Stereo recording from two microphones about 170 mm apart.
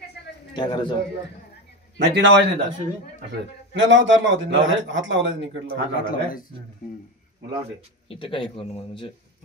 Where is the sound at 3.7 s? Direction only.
90° right.